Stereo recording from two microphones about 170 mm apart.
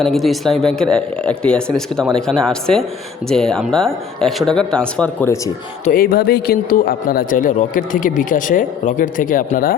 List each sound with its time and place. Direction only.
0.0 s speech: centre (ahead or behind)
5.8 s speech: 55° left (ahead or behind)